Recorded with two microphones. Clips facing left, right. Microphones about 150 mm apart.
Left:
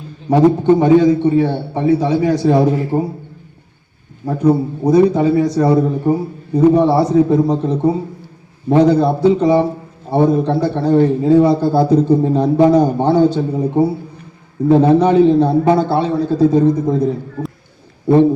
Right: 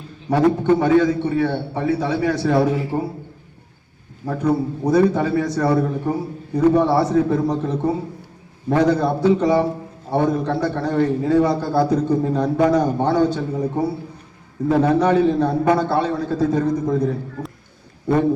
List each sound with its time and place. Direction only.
0.3 s a man's voice: 20° left (ahead or behind)
2.6 s a man's voice: 40° left (ahead or behind)
4.3 s a man's voice: 20° left (ahead or behind)
8.7 s a man's voice: 25° left (ahead or behind)
16.0 s a man's voice: 15° left (ahead or behind)